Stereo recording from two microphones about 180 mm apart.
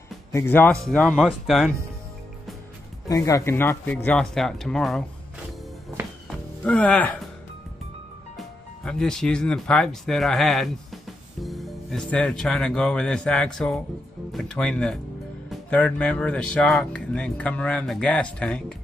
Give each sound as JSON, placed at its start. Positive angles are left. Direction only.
{"t": 0.3, "sound": "speech", "side_deg": 15}
{"t": 3.1, "sound": "speech", "side_deg": 15}
{"t": 6.2, "sound": "music", "side_deg": 10}
{"t": 8.8, "sound": "speech", "side_deg": 5}